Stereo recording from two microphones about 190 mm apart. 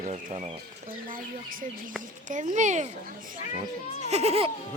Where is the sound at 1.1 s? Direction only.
45° right (ahead or behind).